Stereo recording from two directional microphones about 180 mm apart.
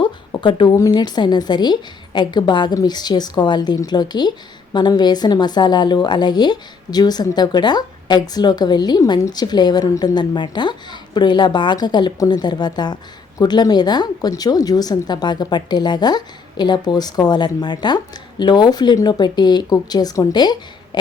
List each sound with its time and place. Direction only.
0.0 s a woman's voice: 25° left (ahead or behind)